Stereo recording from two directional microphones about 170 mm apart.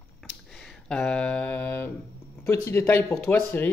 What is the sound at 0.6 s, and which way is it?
Speech, 5° left (ahead or behind).